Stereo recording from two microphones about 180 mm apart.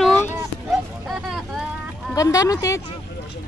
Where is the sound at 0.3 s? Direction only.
5° right (ahead or behind).